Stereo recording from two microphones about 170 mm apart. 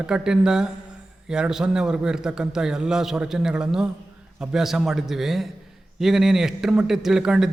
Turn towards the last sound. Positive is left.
turn(degrees=-5)  # may be behind; listen again after turning